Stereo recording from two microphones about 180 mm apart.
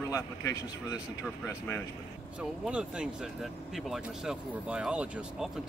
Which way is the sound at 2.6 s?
5° right (ahead or behind).